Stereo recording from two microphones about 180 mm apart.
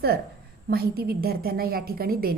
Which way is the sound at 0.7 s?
60° right (ahead or behind).